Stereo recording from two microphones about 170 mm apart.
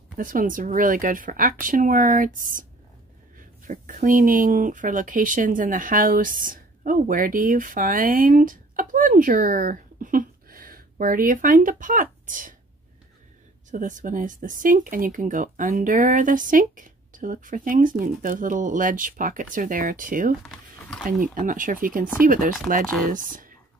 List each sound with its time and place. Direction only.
0.2 s speech: 50° right (ahead or behind)
13.7 s speech: 50° right (ahead or behind)
20.4 s a sound: centre (ahead or behind)
21.2 s speech: 55° right (ahead or behind)